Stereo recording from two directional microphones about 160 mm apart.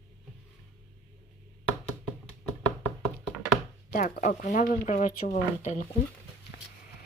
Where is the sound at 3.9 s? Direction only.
55° left (ahead or behind).